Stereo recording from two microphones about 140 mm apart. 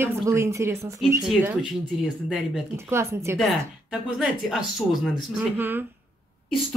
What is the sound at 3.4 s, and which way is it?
Speech, centre (ahead or behind).